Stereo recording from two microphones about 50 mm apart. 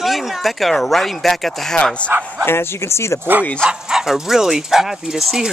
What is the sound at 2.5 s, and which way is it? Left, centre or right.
Speech, left.